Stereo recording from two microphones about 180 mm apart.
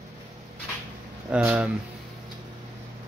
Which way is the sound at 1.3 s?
5° right (ahead or behind).